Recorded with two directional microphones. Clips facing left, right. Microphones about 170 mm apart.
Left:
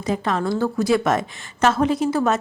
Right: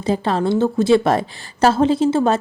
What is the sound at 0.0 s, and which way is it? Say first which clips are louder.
A woman's voice: right 4 dB; 30° right (ahead or behind).